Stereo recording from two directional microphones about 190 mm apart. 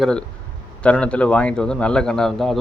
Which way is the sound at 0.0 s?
5° left (ahead or behind).